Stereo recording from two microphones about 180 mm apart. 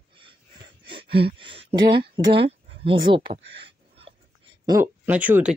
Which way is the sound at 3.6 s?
30° right (ahead or behind).